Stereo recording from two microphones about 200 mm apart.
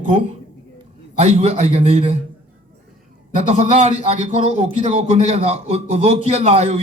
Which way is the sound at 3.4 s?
35° right (ahead or behind).